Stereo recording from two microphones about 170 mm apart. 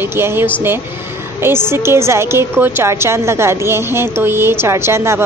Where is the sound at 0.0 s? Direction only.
15° right (ahead or behind).